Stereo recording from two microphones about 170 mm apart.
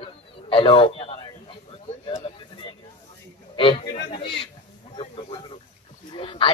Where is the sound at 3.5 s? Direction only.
30° left (ahead or behind).